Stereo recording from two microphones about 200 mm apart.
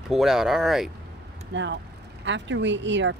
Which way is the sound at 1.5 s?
60° right (ahead or behind).